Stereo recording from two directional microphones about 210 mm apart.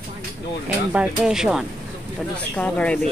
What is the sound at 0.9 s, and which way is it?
Speech, 5° right (ahead or behind).